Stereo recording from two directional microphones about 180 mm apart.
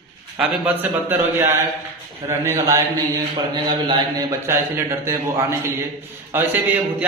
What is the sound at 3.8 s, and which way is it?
Speech, 25° right (ahead or behind).